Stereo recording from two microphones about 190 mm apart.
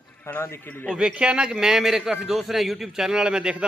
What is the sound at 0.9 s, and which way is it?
A man's voice, 5° right (ahead or behind).